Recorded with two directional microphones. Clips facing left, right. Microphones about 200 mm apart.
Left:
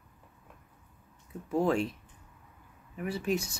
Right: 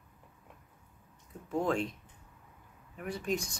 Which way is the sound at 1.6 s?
5° left (ahead or behind).